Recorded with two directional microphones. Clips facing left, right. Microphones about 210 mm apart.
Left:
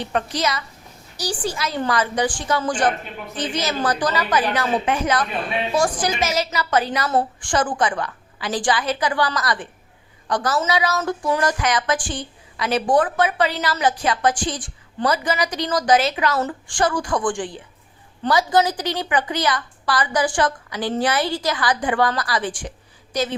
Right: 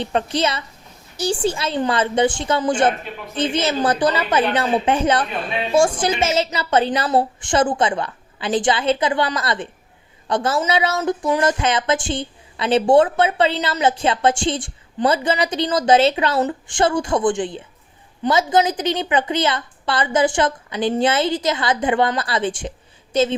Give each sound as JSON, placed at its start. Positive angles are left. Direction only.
{"t": 0.0, "sound": "a woman's voice", "side_deg": -25}